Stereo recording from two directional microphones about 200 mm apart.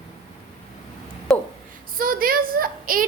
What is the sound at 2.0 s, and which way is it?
A woman's voice, 45° right (ahead or behind).